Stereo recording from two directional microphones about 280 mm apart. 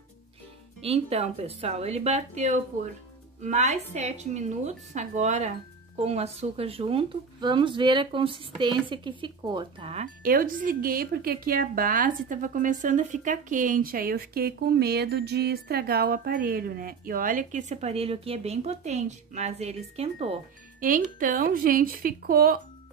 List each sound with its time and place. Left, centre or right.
0.8 s speech: right